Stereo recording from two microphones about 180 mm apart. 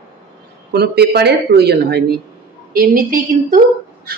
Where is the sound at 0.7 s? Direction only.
65° right (ahead or behind).